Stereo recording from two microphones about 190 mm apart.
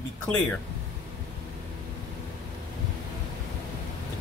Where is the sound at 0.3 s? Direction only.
5° left (ahead or behind).